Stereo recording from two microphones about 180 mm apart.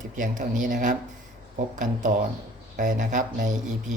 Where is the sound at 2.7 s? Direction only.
50° right (ahead or behind).